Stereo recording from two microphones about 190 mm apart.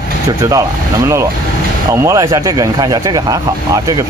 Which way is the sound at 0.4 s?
15° right (ahead or behind).